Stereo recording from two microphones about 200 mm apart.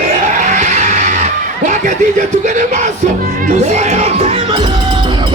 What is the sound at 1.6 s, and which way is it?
Music, 40° right (ahead or behind).